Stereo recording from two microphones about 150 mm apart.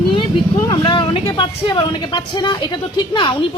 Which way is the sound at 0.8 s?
35° left (ahead or behind).